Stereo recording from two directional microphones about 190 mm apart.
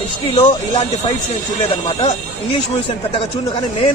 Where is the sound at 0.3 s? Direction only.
30° left (ahead or behind).